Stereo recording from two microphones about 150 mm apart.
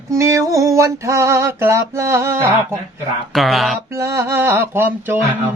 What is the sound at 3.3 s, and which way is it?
Speech, centre (ahead or behind).